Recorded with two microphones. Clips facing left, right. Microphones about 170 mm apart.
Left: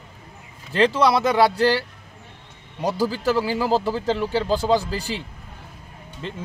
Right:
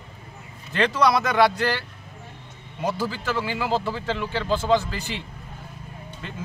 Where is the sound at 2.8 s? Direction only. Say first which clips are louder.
Left 5 dB; 35° left (ahead or behind).